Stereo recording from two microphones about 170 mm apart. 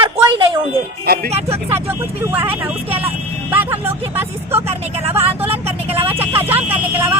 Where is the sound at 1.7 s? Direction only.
15° right (ahead or behind).